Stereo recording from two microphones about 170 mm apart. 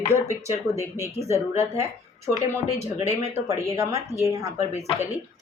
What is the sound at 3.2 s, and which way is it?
Speech, 15° right (ahead or behind).